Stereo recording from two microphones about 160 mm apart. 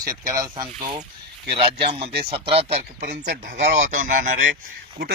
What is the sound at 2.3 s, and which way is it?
Speech, 35° right (ahead or behind).